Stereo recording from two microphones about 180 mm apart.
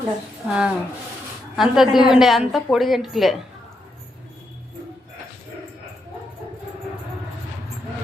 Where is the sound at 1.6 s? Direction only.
Centre (ahead or behind).